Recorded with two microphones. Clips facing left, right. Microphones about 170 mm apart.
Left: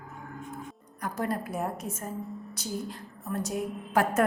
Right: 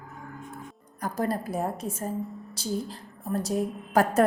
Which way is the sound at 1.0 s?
35° right (ahead or behind).